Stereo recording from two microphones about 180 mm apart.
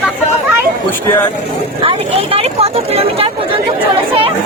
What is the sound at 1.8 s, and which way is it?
Speech, 30° right (ahead or behind).